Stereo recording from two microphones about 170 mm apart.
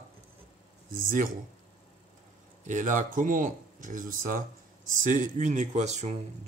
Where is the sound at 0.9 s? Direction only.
50° right (ahead or behind).